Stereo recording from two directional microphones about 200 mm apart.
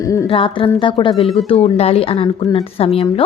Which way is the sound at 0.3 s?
25° left (ahead or behind).